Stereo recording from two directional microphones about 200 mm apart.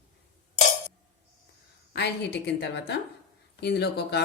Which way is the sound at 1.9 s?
55° left (ahead or behind).